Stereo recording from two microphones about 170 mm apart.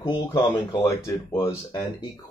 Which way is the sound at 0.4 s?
15° left (ahead or behind).